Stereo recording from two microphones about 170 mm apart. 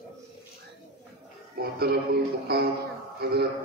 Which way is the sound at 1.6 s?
65° right (ahead or behind).